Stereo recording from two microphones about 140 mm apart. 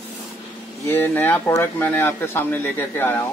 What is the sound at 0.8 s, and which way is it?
Speech, 15° left (ahead or behind).